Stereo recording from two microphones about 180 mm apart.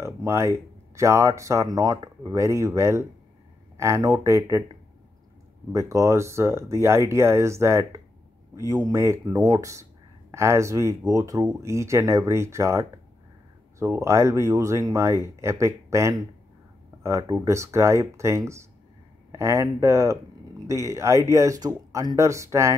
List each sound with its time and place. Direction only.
0.0 s speech: 15° right (ahead or behind)
5.7 s speech: 15° right (ahead or behind)